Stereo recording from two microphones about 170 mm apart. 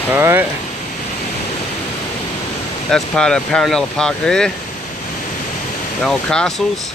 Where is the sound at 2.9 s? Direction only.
5° left (ahead or behind).